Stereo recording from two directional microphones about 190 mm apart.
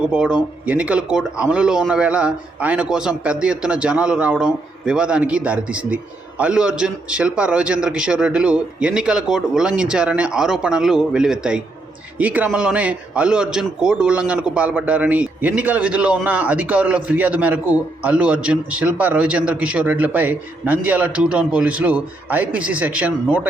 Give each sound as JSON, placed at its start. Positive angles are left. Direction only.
{"t": 0.1, "sound": "a man's voice", "side_deg": -5}